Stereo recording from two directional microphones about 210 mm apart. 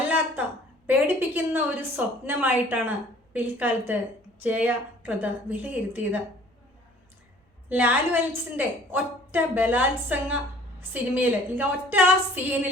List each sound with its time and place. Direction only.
0.9 s a woman's voice: 5° right (ahead or behind)
7.7 s a woman's voice: 5° right (ahead or behind)